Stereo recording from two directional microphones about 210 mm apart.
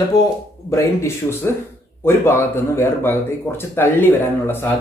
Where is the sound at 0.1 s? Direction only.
15° left (ahead or behind).